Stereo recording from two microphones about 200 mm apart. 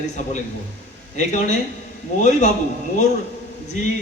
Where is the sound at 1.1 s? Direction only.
35° left (ahead or behind).